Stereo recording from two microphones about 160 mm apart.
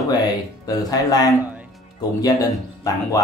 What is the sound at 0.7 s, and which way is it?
Speech, 25° left (ahead or behind).